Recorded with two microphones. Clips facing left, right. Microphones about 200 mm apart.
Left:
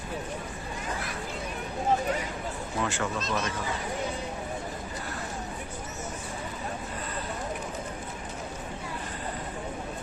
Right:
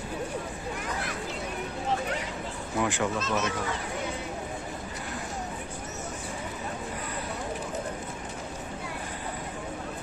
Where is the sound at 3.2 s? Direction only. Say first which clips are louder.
Right 2 dB; 35° left (ahead or behind).